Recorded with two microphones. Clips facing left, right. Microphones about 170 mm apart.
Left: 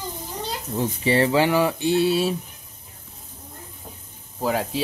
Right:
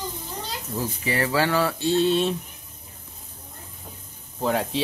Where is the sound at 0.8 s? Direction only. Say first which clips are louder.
Left 6 dB; 25° left (ahead or behind); by 2.4 s 5° left (ahead or behind).